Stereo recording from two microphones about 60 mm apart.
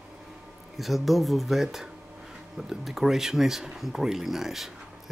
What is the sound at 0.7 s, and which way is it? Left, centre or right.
Speech, centre.